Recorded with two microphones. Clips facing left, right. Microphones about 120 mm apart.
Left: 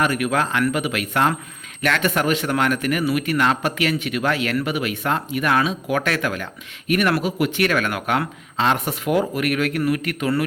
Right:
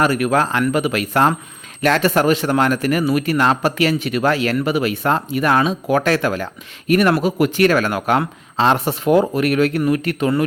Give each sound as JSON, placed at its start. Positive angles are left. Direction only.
{"t": 0.0, "sound": "speech", "side_deg": -35}